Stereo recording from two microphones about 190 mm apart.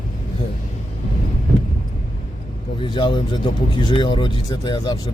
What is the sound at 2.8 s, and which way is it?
Speech, 25° left (ahead or behind).